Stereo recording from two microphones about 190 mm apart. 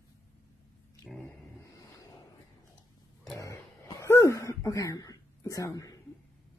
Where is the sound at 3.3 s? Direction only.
15° left (ahead or behind).